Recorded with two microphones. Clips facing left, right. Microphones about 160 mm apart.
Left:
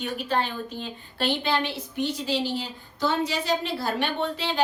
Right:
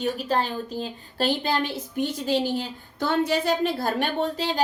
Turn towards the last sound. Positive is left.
turn(degrees=-40)  # may be behind; listen again after turning